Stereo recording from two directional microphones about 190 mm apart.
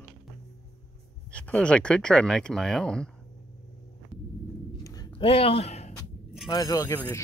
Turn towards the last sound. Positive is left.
turn(degrees=10)  # may be behind; listen again after turning